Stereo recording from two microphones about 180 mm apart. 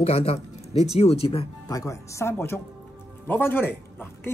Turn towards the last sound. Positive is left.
turn(degrees=10)  # may be behind; listen again after turning